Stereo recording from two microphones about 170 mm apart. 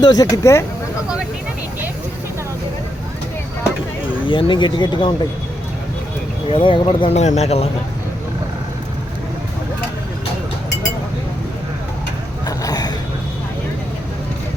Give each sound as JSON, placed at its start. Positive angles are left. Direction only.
{"t": 0.0, "sound": "speech", "side_deg": 20}
{"t": 4.3, "sound": "speech", "side_deg": 30}
{"t": 6.5, "sound": "speech", "side_deg": 35}
{"t": 12.5, "sound": "a sound", "side_deg": 20}